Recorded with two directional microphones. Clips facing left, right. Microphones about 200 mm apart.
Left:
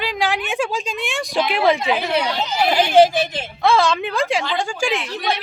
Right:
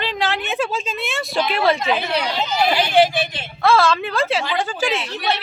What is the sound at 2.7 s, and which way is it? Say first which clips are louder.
Speech: left 5 dB; 40° left (ahead or behind).